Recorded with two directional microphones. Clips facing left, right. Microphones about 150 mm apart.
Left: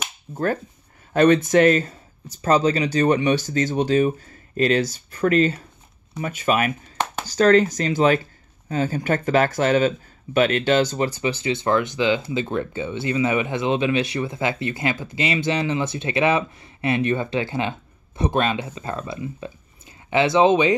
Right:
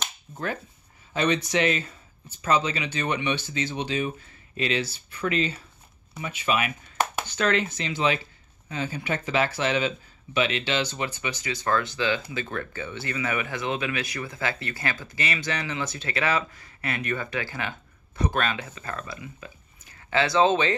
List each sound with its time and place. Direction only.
0.3 s speech: 45° left (ahead or behind); by 20.7 s 15° left (ahead or behind)